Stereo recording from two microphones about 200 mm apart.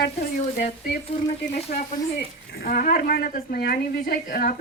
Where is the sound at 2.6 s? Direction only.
45° left (ahead or behind).